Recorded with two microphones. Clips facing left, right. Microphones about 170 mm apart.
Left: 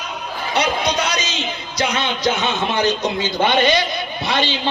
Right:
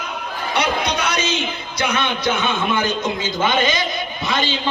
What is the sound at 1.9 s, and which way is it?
Music, 55° right (ahead or behind).